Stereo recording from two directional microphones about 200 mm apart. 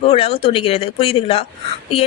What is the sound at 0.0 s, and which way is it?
A woman's voice, 30° left (ahead or behind).